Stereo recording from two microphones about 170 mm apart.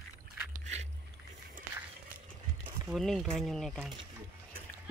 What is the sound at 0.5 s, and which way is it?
Boat, 40° right (ahead or behind).